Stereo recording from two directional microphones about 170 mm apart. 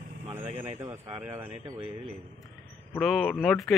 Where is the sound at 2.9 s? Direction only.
Centre (ahead or behind).